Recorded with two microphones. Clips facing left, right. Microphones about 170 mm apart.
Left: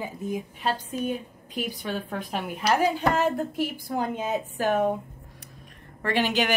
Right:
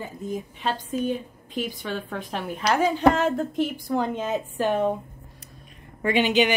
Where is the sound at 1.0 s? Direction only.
40° left (ahead or behind).